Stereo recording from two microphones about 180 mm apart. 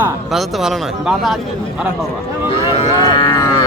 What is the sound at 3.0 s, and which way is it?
Cattle, 20° left (ahead or behind).